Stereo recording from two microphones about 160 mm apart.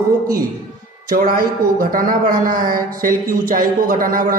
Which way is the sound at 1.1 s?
60° right (ahead or behind).